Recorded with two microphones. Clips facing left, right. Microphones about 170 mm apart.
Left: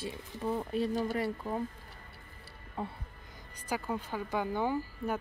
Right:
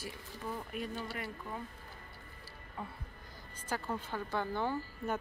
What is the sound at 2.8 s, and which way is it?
Speech, 30° left (ahead or behind).